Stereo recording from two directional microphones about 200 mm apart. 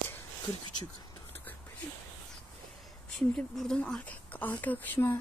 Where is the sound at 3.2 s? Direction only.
Centre (ahead or behind).